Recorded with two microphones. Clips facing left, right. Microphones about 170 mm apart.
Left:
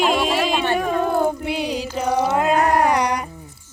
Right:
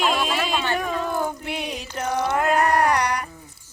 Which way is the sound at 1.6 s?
90° left.